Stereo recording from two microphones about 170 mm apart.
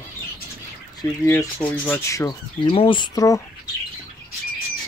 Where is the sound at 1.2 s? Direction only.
10° left (ahead or behind).